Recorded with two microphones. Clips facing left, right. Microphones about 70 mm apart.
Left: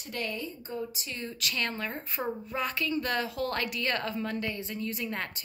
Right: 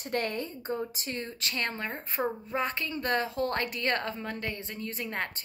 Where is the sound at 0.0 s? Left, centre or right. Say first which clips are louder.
Right 4 dB; right.